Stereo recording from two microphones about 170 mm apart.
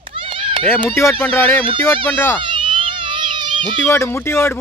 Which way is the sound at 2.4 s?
30° right (ahead or behind).